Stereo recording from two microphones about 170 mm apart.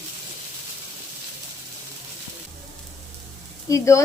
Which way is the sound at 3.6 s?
20° left (ahead or behind).